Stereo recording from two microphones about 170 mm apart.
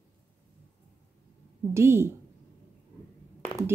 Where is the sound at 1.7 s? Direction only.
15° right (ahead or behind).